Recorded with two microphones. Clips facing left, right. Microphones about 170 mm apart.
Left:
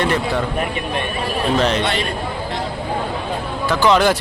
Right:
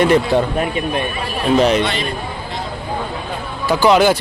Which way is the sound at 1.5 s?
10° right (ahead or behind).